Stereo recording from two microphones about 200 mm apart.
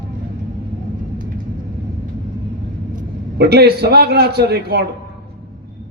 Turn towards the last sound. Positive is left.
turn(degrees=-50)  # may be behind; listen again after turning